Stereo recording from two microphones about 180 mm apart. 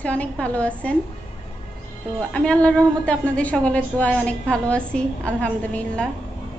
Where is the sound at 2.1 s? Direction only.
5° left (ahead or behind).